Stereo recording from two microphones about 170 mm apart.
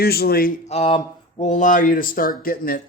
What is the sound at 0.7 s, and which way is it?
Speech, 35° left (ahead or behind).